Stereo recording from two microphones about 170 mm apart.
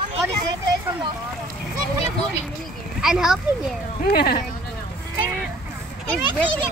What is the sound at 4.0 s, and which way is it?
Speech, 60° left (ahead or behind).